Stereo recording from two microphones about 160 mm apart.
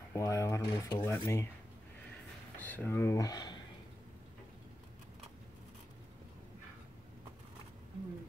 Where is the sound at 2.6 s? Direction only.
10° left (ahead or behind).